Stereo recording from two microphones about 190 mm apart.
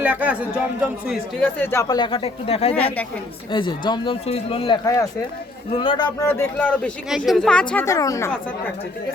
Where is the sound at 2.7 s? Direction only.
10° left (ahead or behind).